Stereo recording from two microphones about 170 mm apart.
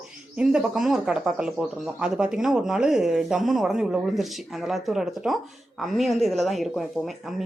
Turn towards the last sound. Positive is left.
turn(degrees=0)  # may be behind; listen again after turning